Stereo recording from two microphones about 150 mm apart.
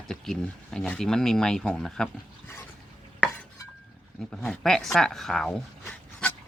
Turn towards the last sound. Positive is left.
turn(degrees=5)  # may be behind; listen again after turning